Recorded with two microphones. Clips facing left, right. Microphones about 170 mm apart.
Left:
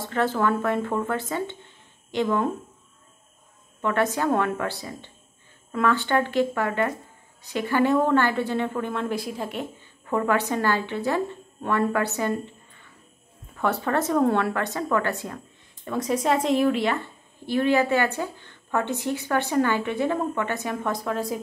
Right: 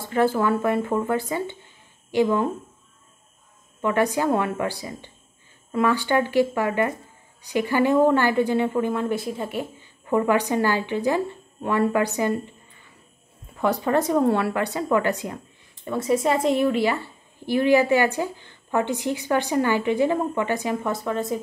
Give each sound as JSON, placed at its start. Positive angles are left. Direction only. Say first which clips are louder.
{"t": 0.1, "sound": "speech", "louder": "right 3 dB", "side_deg": -10}
{"t": 3.8, "sound": "speech", "louder": "right 2 dB", "side_deg": -10}
{"t": 8.9, "sound": "speech", "louder": "right 3 dB", "side_deg": 0}
{"t": 10.0, "sound": "speech", "louder": "right 3 dB", "side_deg": -15}
{"t": 13.6, "sound": "speech", "louder": "right 3 dB", "side_deg": -15}
{"t": 15.9, "sound": "speech", "louder": "right 2 dB", "side_deg": -5}